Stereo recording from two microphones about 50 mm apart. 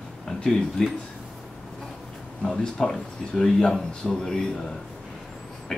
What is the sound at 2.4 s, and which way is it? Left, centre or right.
Speech, centre.